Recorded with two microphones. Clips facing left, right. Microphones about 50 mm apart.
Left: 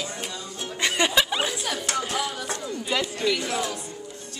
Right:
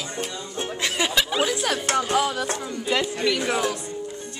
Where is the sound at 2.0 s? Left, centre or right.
Right.